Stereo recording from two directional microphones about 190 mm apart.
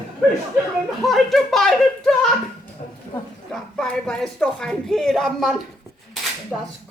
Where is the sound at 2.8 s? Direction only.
40° left (ahead or behind).